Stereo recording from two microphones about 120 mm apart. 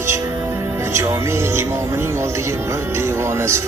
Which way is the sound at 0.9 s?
20° right (ahead or behind).